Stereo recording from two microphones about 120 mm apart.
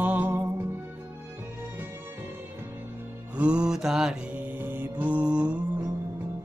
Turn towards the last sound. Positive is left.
turn(degrees=-10)  # may be behind; listen again after turning